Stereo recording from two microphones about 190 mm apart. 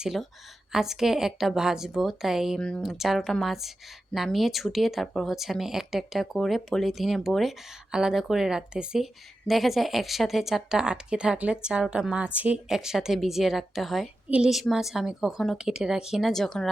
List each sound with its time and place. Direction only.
0.0 s speech: centre (ahead or behind)